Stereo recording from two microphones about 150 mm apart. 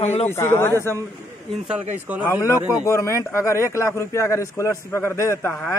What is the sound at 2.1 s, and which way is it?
Speech, 10° right (ahead or behind).